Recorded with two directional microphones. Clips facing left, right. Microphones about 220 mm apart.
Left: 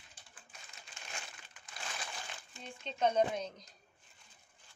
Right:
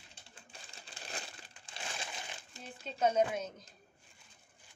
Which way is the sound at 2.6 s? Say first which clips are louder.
Right 1 dB; 5° right (ahead or behind).